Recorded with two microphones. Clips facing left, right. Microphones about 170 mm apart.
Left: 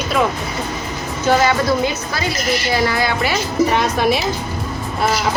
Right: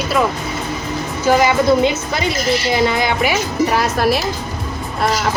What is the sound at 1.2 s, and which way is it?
A woman's voice, 20° right (ahead or behind).